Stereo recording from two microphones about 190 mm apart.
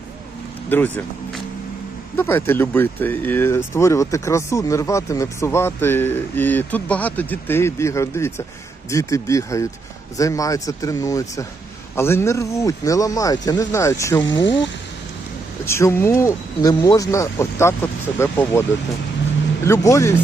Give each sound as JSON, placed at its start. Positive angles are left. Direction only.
{"t": 0.7, "sound": "speech", "side_deg": 10}
{"t": 2.1, "sound": "speech", "side_deg": 10}
{"t": 15.6, "sound": "speech", "side_deg": 15}
{"t": 19.6, "sound": "speech", "side_deg": 15}